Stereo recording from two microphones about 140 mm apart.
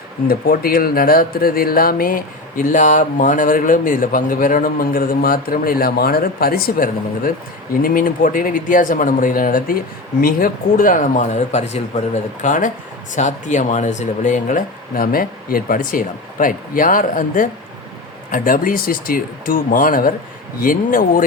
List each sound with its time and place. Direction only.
0.3 s speech: 90° left